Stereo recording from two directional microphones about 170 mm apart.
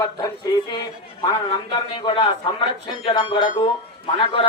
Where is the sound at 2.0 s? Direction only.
30° left (ahead or behind).